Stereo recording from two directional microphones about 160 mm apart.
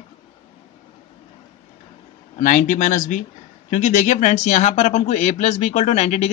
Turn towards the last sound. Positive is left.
turn(degrees=40)  # may be behind; listen again after turning